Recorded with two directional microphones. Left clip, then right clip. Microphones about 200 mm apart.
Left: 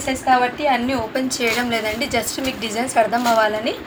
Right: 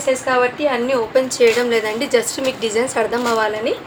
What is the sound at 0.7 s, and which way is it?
A woman's voice, 15° right (ahead or behind).